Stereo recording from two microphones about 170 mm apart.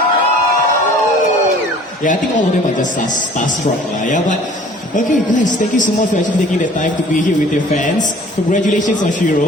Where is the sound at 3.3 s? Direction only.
50° left (ahead or behind).